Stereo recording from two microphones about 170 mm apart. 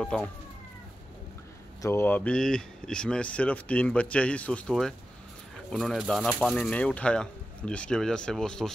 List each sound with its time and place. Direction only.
0.0 s speech: 5° left (ahead or behind)
1.8 s speech: 15° left (ahead or behind)